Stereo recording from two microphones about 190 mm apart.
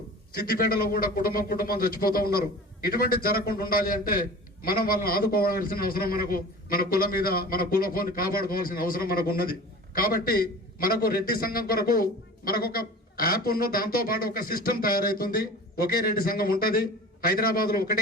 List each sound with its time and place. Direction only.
0.3 s a man's voice: 50° left (ahead or behind)